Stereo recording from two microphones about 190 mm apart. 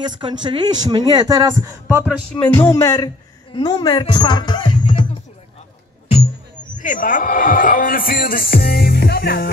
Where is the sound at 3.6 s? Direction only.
25° left (ahead or behind).